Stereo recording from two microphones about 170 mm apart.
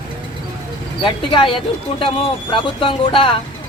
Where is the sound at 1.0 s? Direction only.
30° left (ahead or behind).